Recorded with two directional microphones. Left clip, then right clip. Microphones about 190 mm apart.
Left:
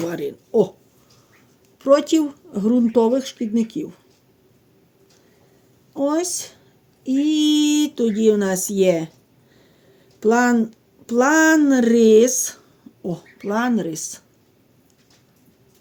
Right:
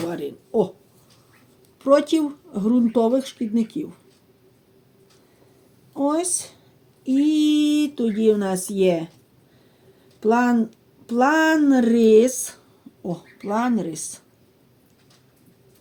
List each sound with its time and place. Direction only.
0.1 s speech: 45° left (ahead or behind)
1.8 s speech: 30° left (ahead or behind)
5.9 s a woman's voice: 35° left (ahead or behind)
10.2 s speech: 50° left (ahead or behind)